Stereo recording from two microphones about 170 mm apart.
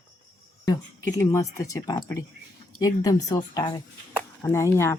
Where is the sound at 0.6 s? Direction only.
20° left (ahead or behind).